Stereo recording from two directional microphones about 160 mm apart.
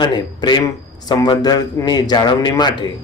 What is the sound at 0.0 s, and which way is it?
A man's voice, 25° left (ahead or behind).